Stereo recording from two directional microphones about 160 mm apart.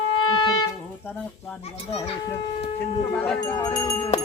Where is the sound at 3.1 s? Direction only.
10° left (ahead or behind).